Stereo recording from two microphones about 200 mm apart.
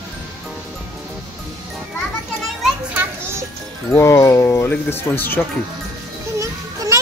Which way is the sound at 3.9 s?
15° left (ahead or behind).